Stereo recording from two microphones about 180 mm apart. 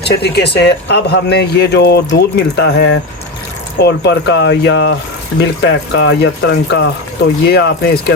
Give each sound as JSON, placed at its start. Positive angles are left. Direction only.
{"t": 0.1, "sound": "speech", "side_deg": 65}